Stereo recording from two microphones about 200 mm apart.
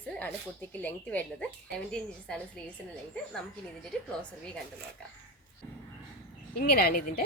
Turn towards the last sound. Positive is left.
turn(degrees=50)  # may be behind; listen again after turning